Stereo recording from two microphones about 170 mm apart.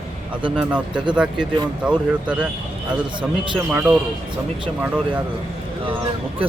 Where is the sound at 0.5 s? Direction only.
5° right (ahead or behind).